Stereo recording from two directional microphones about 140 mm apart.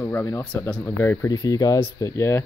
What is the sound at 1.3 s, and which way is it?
Speech, 25° left (ahead or behind).